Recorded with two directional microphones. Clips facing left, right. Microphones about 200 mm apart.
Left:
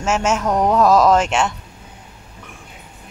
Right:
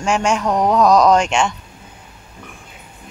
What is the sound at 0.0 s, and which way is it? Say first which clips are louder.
Speech: right 1 dB; 5° left (ahead or behind).